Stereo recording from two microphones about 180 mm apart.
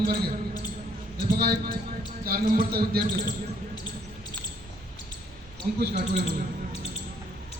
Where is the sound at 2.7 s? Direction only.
60° right (ahead or behind).